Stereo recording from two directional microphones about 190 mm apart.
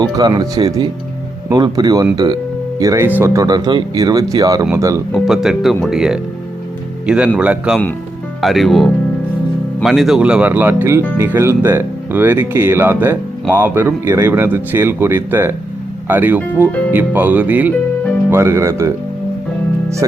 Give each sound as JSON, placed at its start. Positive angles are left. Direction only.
{"t": 0.0, "sound": "speech", "side_deg": -20}
{"t": 5.1, "sound": "speech", "side_deg": 0}
{"t": 7.3, "sound": "speech", "side_deg": -5}
{"t": 20.0, "sound": "speech", "side_deg": -20}